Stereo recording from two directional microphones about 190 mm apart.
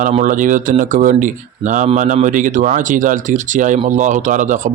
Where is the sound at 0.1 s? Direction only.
40° right (ahead or behind).